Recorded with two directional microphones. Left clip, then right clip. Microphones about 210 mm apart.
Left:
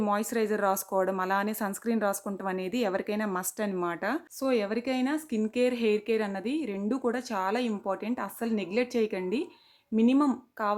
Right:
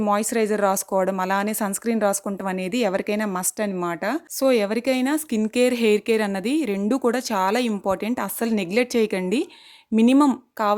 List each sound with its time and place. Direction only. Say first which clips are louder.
0.0 s speech: right 7 dB; 35° right (ahead or behind)
4.4 s speech: right 10 dB; 45° right (ahead or behind)